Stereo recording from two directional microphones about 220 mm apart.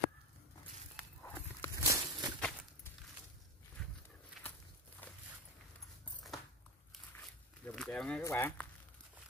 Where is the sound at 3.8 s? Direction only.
Centre (ahead or behind).